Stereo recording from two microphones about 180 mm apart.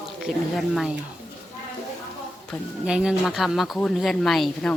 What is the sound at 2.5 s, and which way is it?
Speech, centre (ahead or behind).